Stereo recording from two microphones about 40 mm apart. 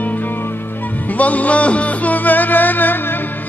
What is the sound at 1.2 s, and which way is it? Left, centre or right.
Music, left.